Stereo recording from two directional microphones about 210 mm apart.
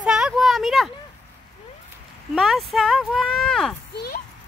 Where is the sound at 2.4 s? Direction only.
Centre (ahead or behind).